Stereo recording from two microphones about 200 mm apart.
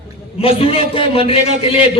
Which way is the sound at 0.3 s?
30° left (ahead or behind).